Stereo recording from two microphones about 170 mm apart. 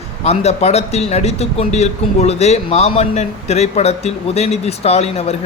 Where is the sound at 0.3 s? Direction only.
40° left (ahead or behind).